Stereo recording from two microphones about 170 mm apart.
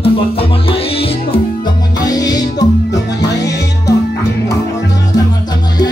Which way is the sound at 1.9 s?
20° left (ahead or behind).